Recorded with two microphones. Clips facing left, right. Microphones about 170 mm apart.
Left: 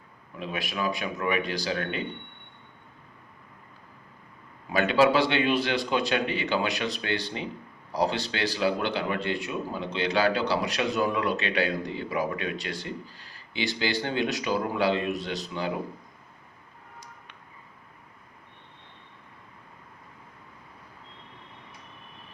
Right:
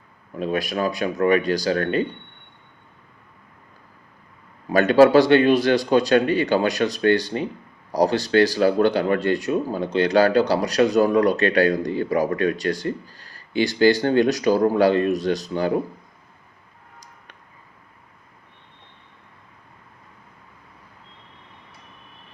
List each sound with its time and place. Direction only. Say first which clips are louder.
0.3 s speech: right 9 dB; 40° right (ahead or behind)
4.7 s speech: right 8 dB; 45° right (ahead or behind)